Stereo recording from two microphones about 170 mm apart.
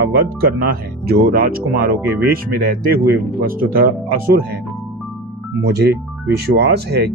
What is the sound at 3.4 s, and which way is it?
Speech, 60° right (ahead or behind).